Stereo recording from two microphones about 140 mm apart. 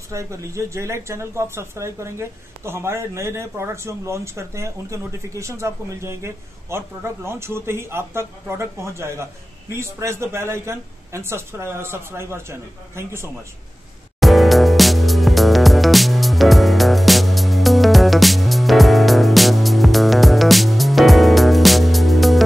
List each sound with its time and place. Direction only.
0.1 s speech: 20° right (ahead or behind)
14.2 s music: centre (ahead or behind)